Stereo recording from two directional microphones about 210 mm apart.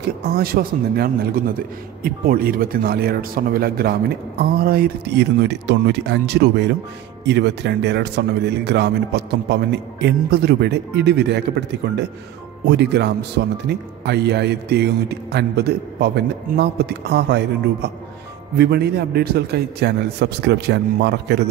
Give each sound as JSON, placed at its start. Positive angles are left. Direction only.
{"t": 0.0, "sound": "speech", "side_deg": -45}
{"t": 12.6, "sound": "speech", "side_deg": -55}
{"t": 18.6, "sound": "speech", "side_deg": -50}